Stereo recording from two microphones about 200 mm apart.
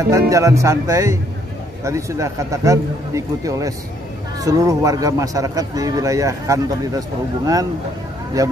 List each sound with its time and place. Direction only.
0.0 s a man's voice: 15° right (ahead or behind)